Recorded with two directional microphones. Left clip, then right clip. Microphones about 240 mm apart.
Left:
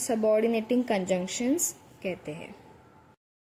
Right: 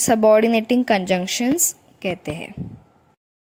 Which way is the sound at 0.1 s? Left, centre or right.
Right.